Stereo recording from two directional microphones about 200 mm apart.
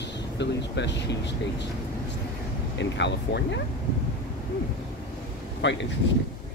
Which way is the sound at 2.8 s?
60° left (ahead or behind).